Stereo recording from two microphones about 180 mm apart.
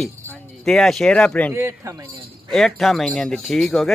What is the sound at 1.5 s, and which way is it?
Speech, 15° right (ahead or behind).